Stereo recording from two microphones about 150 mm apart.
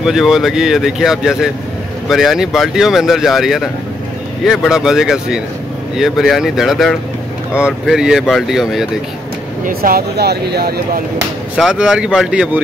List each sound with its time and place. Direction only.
0.0 s speech: 5° right (ahead or behind)
9.7 s speech: 80° right
11.5 s speech: 5° right (ahead or behind)